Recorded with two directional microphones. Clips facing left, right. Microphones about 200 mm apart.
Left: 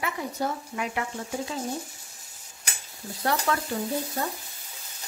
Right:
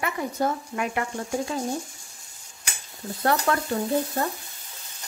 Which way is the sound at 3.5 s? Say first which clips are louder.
Right 1 dB; 55° right (ahead or behind).